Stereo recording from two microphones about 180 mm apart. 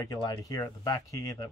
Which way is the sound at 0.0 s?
20° left (ahead or behind).